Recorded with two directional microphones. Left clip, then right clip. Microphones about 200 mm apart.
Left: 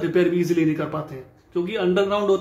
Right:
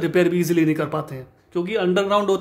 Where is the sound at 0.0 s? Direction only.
45° right (ahead or behind).